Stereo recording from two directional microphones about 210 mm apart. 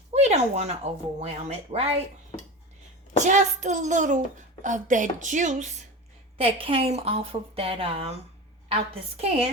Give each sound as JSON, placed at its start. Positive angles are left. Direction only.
{"t": 0.1, "sound": "a sound", "side_deg": -30}
{"t": 1.2, "sound": "a woman's voice", "side_deg": -30}
{"t": 3.2, "sound": "a woman's voice", "side_deg": -35}
{"t": 6.3, "sound": "a woman's voice", "side_deg": -25}